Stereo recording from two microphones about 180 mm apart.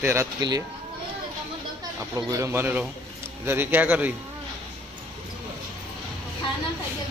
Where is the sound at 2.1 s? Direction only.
15° right (ahead or behind).